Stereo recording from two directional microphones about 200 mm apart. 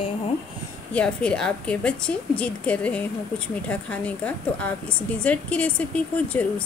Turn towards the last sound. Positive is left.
turn(degrees=5)  # may be behind; listen again after turning